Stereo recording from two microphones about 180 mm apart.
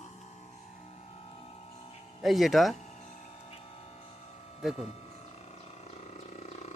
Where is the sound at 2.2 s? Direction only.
Centre (ahead or behind).